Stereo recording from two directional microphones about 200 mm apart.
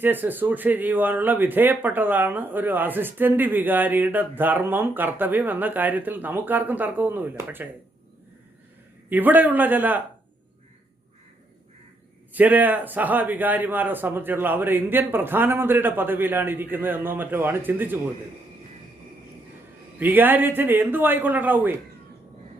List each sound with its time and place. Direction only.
0.0 s speech: 10° right (ahead or behind)
9.0 s speech: 10° right (ahead or behind)
12.3 s speech: 10° right (ahead or behind)
20.0 s speech: 10° right (ahead or behind)